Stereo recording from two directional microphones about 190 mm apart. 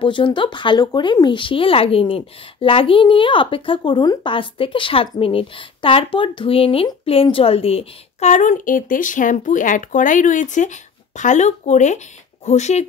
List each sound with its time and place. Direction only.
0.0 s speech: 25° left (ahead or behind)